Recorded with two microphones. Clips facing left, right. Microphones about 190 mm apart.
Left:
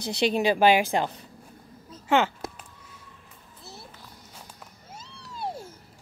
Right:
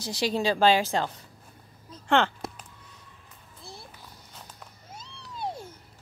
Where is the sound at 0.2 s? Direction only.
20° left (ahead or behind).